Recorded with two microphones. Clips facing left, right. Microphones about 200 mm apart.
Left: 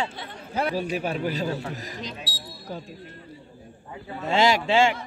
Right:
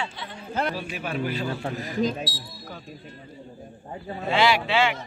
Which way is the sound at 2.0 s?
50° right (ahead or behind).